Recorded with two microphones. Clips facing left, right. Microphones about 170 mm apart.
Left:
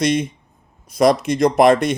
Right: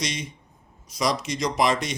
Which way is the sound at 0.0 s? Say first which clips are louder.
Left 13 dB; 55° left (ahead or behind).